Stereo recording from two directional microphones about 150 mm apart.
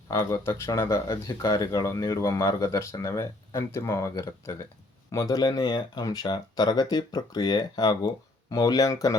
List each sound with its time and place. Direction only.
0.1 s speech: 20° left (ahead or behind)